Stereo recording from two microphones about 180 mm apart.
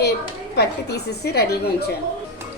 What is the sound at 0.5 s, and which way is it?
Speech, 65° left (ahead or behind).